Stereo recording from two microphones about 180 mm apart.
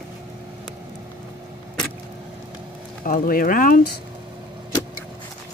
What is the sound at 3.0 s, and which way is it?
Speech, 50° left (ahead or behind).